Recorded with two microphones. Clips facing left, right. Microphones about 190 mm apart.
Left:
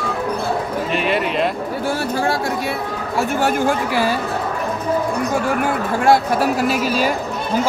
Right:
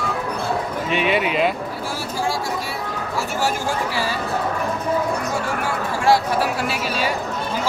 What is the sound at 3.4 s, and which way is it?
Speech, 55° left (ahead or behind).